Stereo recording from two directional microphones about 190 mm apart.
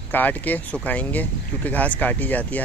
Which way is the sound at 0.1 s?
10° left (ahead or behind).